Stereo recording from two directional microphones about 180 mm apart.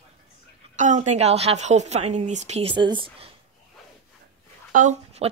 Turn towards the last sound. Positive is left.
turn(degrees=-40)  # may be behind; listen again after turning